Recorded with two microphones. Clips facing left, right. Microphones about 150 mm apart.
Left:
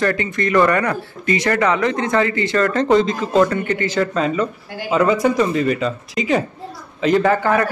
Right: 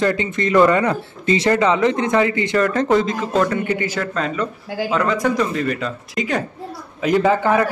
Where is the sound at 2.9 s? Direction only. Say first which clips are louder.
Left 2 dB; 5° right (ahead or behind).